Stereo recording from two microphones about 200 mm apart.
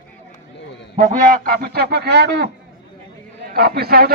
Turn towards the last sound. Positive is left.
turn(degrees=-50)  # may be behind; listen again after turning